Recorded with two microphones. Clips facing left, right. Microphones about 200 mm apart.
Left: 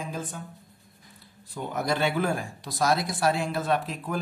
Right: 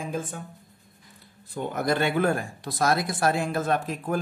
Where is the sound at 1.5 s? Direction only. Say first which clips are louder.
Right 2 dB; 50° right (ahead or behind).